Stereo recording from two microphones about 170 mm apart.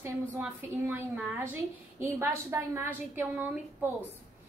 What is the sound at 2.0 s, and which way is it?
A woman's voice, 15° right (ahead or behind).